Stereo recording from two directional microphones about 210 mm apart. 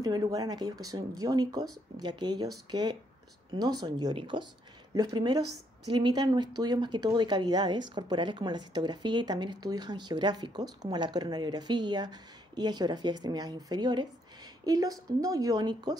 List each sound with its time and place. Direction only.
0.0 s speech: 20° right (ahead or behind)